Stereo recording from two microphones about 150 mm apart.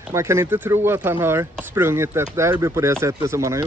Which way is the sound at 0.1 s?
20° right (ahead or behind).